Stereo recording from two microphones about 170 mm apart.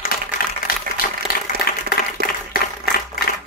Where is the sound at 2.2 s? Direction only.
60° left (ahead or behind).